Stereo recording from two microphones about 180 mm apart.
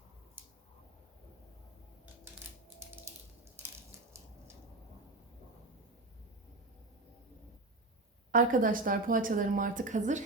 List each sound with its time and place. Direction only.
8.3 s a woman's voice: 45° right (ahead or behind)